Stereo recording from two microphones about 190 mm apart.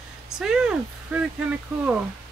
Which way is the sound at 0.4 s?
5° right (ahead or behind).